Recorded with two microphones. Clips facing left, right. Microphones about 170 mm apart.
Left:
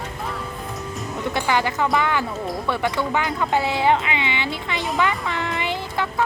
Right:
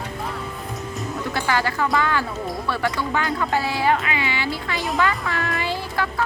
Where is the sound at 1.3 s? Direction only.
20° left (ahead or behind).